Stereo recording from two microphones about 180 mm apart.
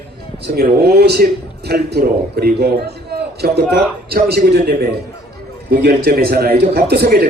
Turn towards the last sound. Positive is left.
turn(degrees=-60)  # may be behind; listen again after turning